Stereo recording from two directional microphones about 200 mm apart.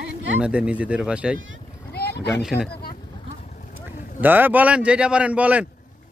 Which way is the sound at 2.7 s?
50° left (ahead or behind).